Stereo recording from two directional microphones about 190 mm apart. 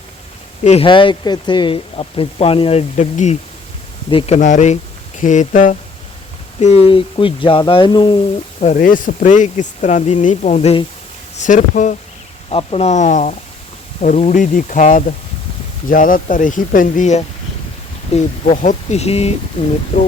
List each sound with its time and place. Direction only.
0.6 s speech: 30° left (ahead or behind)
4.4 s speech: 40° left (ahead or behind); by 8.2 s 25° left (ahead or behind)
8.6 s speech: 45° left (ahead or behind)
12.5 s speech: 30° left (ahead or behind)